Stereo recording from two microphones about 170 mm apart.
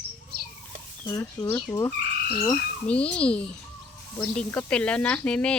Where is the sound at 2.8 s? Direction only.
5° left (ahead or behind).